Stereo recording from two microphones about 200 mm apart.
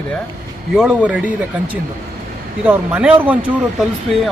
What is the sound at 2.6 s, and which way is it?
Speech, 10° right (ahead or behind).